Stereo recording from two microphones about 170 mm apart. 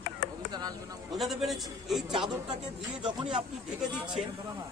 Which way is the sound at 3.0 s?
30° right (ahead or behind).